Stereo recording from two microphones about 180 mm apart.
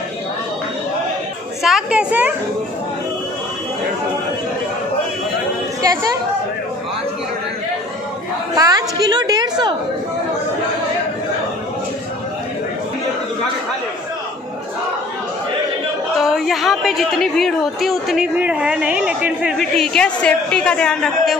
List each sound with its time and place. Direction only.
1.6 s a woman's voice: centre (ahead or behind)
8.5 s a sound: 20° right (ahead or behind)
16.2 s a woman's voice: centre (ahead or behind)